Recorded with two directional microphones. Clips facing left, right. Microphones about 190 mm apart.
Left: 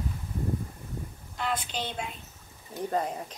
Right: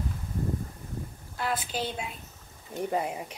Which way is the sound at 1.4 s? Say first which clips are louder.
Right 1 dB; 5° right (ahead or behind).